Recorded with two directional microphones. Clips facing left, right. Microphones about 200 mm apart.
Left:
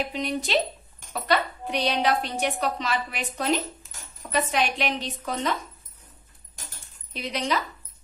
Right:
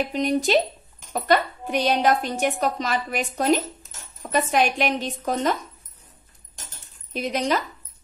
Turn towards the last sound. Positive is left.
turn(degrees=-50)  # may be behind; listen again after turning